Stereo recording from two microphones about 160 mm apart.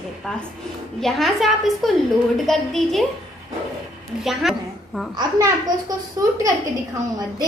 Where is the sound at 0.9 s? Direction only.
Centre (ahead or behind).